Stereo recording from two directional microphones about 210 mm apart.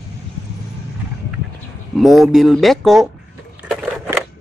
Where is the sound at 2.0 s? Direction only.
Centre (ahead or behind).